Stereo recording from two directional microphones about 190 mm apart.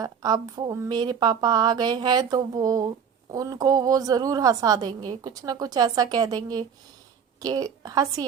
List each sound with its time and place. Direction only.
0.0 s a woman's voice: 20° right (ahead or behind)